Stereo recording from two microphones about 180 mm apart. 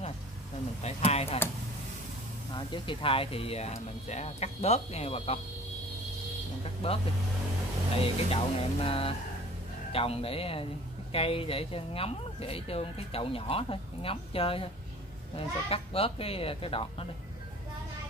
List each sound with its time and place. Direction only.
0.8 s speech: 35° left (ahead or behind)
2.5 s speech: 25° left (ahead or behind)
6.6 s speech: 30° left (ahead or behind)
8.3 s speech: 30° left (ahead or behind)